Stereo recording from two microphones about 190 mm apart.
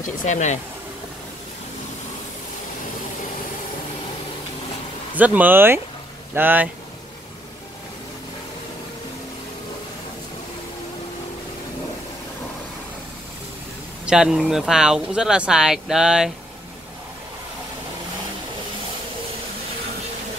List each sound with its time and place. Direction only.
0.0 s speech: 40° left (ahead or behind)
5.1 s speech: 10° right (ahead or behind)
14.0 s speech: 5° right (ahead or behind)